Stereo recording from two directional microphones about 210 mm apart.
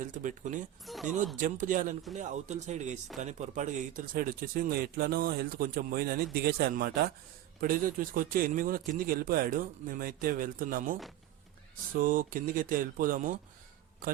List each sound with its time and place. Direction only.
0.0 s speech: 35° right (ahead or behind)
0.9 s speech: centre (ahead or behind)
1.4 s speech: 40° right (ahead or behind)
11.9 s speech: 40° right (ahead or behind)